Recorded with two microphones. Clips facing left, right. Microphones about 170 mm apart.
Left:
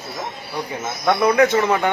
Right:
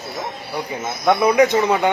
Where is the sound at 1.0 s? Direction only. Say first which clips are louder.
Right 1 dB; 15° right (ahead or behind).